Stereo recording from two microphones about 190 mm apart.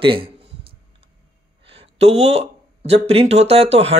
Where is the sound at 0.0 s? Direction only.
30° right (ahead or behind).